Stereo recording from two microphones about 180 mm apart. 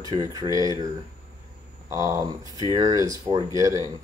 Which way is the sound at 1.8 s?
20° right (ahead or behind).